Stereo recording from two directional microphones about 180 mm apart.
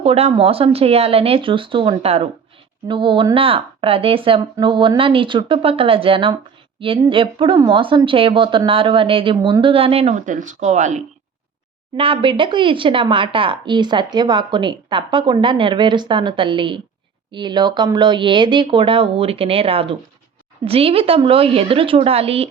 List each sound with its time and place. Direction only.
0.0 s speech: 35° right (ahead or behind)
11.9 s speech: 30° right (ahead or behind)